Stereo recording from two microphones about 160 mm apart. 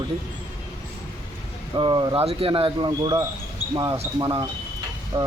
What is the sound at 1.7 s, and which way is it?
Speech, 30° right (ahead or behind).